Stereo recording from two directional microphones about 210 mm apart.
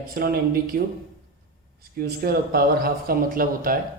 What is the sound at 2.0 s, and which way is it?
Speech, 45° right (ahead or behind).